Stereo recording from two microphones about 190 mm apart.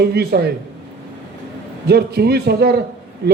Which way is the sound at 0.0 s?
55° right (ahead or behind).